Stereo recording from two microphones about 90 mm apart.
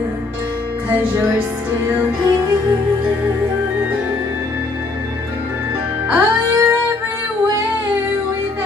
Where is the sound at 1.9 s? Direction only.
20° right (ahead or behind).